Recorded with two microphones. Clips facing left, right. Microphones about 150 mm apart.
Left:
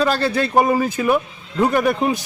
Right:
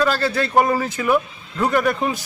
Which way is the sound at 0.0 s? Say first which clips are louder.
Left 1 dB; 20° left (ahead or behind).